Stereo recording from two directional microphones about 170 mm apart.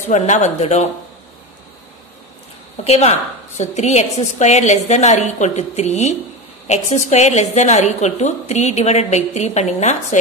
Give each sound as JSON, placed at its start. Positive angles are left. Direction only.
{"t": 0.1, "sound": "a woman's voice", "side_deg": 45}
{"t": 2.8, "sound": "a woman's voice", "side_deg": 40}